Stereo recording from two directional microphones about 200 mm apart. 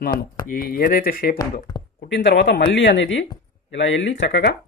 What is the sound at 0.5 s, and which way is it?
Speech, 45° left (ahead or behind).